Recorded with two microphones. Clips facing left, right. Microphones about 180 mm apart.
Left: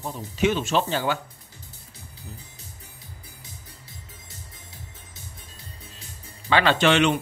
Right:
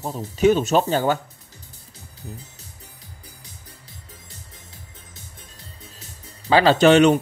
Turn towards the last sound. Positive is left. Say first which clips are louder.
# right 6 dB
turn(degrees=-40)  # may be behind; listen again after turning